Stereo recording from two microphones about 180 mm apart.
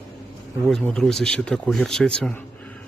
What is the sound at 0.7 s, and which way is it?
Speech, 5° left (ahead or behind).